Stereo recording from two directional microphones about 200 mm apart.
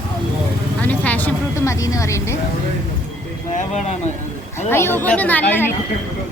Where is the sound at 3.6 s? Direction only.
35° left (ahead or behind).